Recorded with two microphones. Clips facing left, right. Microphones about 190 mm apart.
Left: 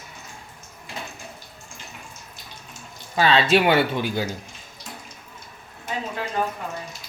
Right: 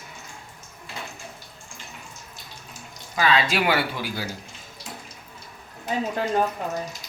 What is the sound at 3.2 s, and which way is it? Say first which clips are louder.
Speech: left 4 dB; 30° left (ahead or behind).